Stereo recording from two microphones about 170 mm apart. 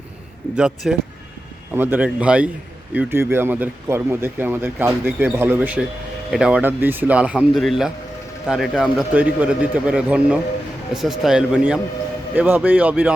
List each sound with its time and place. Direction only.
0.5 s speech: 5° right (ahead or behind)